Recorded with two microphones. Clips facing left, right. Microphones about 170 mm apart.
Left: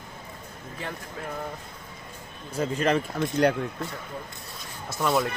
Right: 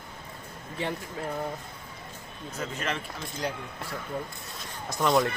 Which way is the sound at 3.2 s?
65° left (ahead or behind).